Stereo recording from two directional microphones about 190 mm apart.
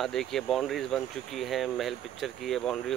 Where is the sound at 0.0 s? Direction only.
Centre (ahead or behind).